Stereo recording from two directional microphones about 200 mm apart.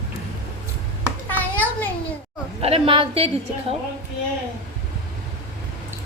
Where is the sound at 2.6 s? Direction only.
30° right (ahead or behind).